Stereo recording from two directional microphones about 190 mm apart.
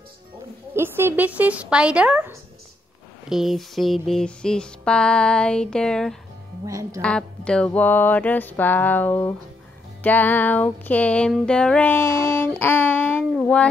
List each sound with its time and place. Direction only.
0.7 s a woman's voice: 10° right (ahead or behind)
3.3 s a sound: centre (ahead or behind)
6.6 s a woman's voice: 15° right (ahead or behind)
7.0 s music: 5° left (ahead or behind)